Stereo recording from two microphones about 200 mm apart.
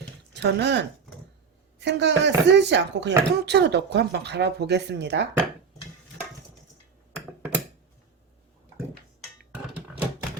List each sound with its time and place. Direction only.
0.3 s speech: 55° right (ahead or behind)
7.1 s computer keyboard: 10° right (ahead or behind)